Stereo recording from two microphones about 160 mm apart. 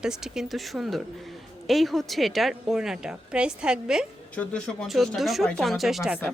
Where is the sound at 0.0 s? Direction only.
5° right (ahead or behind).